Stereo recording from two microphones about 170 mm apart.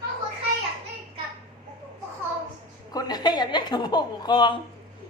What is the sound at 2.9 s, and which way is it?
Speech, 25° left (ahead or behind).